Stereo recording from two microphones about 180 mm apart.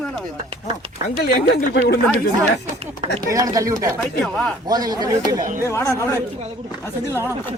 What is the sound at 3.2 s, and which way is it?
Speech, 20° right (ahead or behind).